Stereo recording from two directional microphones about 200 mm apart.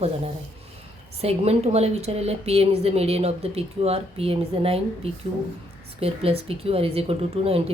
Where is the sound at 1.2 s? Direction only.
30° right (ahead or behind).